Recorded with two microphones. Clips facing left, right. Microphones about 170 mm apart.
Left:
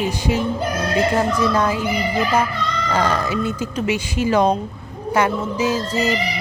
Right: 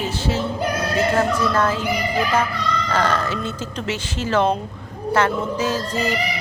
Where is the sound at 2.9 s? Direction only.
10° left (ahead or behind).